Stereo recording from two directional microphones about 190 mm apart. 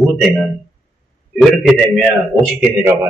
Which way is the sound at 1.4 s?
Centre (ahead or behind).